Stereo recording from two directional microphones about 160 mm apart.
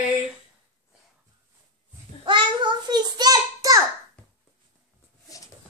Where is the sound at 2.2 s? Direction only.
30° right (ahead or behind).